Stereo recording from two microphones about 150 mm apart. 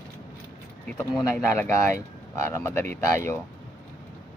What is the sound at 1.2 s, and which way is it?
Speech, 20° left (ahead or behind).